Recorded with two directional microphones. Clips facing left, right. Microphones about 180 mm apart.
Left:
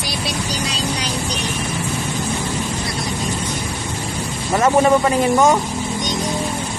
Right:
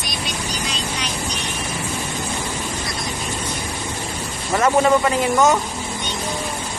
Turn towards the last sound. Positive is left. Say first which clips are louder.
# left 2 dB
turn(degrees=10)  # may be behind; listen again after turning